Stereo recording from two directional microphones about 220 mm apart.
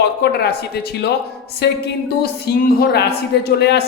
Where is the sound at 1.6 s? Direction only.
50° left (ahead or behind).